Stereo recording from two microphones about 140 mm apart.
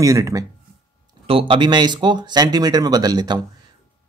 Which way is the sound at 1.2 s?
40° right (ahead or behind).